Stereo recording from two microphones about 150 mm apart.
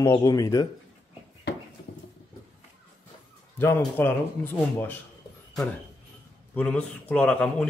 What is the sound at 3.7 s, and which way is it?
Speech, 15° left (ahead or behind).